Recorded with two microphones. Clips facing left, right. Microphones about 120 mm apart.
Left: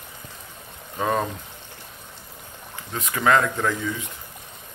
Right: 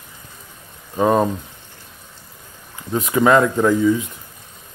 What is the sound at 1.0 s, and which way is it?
Speech, 20° right (ahead or behind).